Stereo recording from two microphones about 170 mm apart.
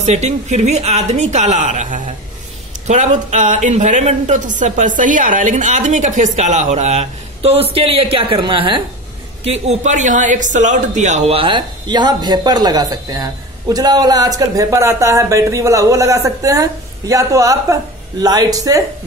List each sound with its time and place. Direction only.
0.0 s speech: 40° right (ahead or behind); by 18.9 s 20° right (ahead or behind)